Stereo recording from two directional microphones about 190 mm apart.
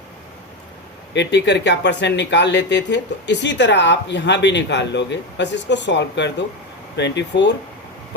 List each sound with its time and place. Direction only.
1.1 s speech: 65° left (ahead or behind)